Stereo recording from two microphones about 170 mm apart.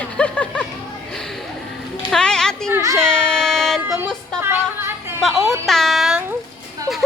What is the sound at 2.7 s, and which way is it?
Speech, 15° right (ahead or behind).